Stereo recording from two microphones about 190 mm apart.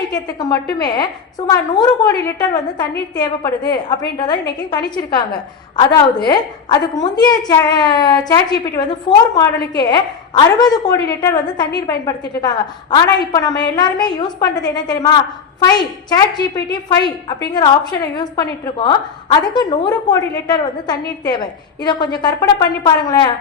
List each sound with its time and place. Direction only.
0.1 s a woman's voice: 20° left (ahead or behind)
17.5 s a woman's voice: 20° left (ahead or behind)